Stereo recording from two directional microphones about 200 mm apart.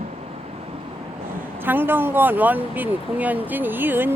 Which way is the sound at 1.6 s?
10° right (ahead or behind).